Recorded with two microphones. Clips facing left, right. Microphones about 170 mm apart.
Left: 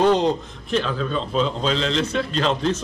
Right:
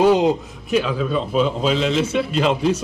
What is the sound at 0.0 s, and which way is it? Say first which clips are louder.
A man's voice: right 3 dB; 5° right (ahead or behind).